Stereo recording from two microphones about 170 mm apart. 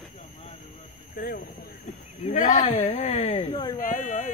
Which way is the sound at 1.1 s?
60° left (ahead or behind).